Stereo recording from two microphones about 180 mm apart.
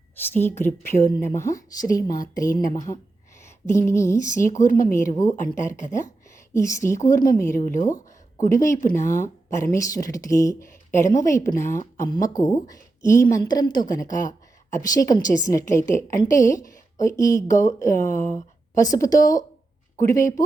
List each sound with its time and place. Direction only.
0.3 s a woman's voice: 10° left (ahead or behind)
4.4 s speech: 45° left (ahead or behind)
4.9 s a woman's voice: 20° left (ahead or behind)
7.6 s speech: 45° left (ahead or behind)
8.4 s a woman's voice: 15° left (ahead or behind)